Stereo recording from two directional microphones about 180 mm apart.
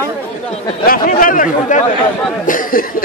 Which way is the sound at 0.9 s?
50° left (ahead or behind).